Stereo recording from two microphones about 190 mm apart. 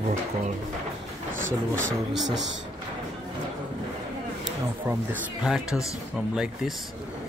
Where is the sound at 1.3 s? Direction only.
90° right.